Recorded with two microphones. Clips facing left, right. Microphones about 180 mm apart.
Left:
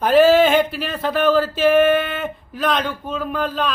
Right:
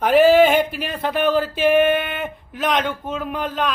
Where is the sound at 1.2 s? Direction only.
15° right (ahead or behind).